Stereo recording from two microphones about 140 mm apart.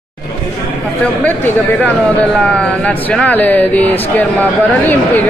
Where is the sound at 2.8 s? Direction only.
10° left (ahead or behind).